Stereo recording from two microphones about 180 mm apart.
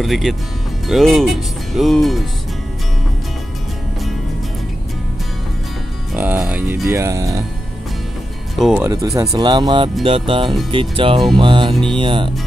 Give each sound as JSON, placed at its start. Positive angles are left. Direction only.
{"t": 0.0, "sound": "speech", "side_deg": 0}
{"t": 6.1, "sound": "speech", "side_deg": -10}
{"t": 8.5, "sound": "speech", "side_deg": 0}
{"t": 8.8, "sound": "speech", "side_deg": -15}